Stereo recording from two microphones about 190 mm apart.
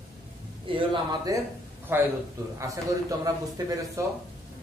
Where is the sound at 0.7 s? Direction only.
25° right (ahead or behind).